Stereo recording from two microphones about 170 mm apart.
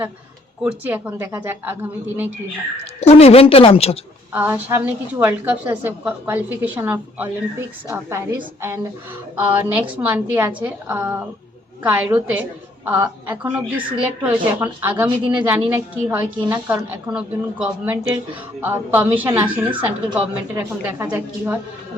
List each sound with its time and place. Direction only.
0.6 s a woman's voice: 10° right (ahead or behind)
3.0 s a woman's voice: 35° left (ahead or behind)
4.3 s a woman's voice: 10° right (ahead or behind)